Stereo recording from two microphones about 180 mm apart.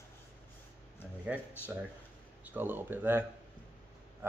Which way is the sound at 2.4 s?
10° right (ahead or behind).